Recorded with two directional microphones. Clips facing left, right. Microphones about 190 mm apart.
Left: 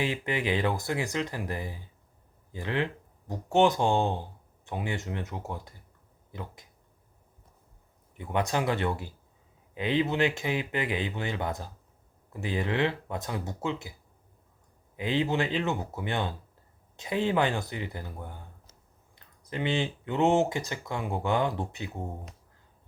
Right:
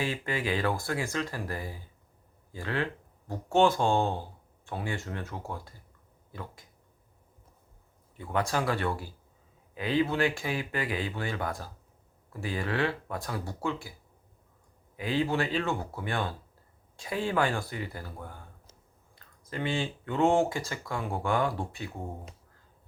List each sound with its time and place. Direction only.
0.0 s speech: 20° left (ahead or behind)
8.1 s speech: 20° left (ahead or behind)
14.9 s speech: 20° left (ahead or behind)